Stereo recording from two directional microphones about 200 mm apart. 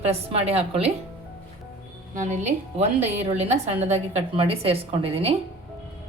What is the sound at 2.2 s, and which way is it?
A woman's voice, 35° right (ahead or behind).